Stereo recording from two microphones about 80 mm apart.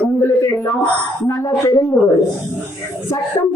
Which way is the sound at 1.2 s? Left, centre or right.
Left.